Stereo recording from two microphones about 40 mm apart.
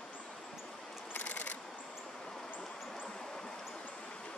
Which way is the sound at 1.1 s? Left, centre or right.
Left.